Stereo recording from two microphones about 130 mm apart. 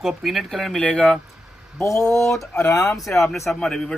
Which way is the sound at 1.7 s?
25° left (ahead or behind).